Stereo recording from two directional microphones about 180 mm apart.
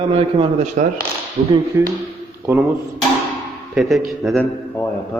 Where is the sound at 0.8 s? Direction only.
45° right (ahead or behind).